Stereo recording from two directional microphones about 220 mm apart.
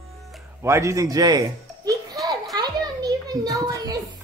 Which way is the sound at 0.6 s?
15° right (ahead or behind).